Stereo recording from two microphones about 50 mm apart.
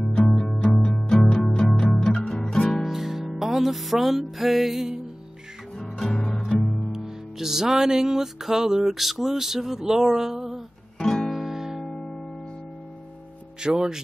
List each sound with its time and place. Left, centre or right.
0.0 s music: centre
1.9 s music: centre
2.8 s music: centre
5.8 s music: centre
6.9 s music: centre
11.0 s guitar: centre
11.2 s guitar: centre
11.9 s music: centre
13.6 s speech: centre